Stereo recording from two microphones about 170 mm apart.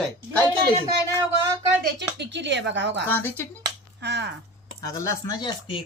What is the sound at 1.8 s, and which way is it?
Speech, 90° right.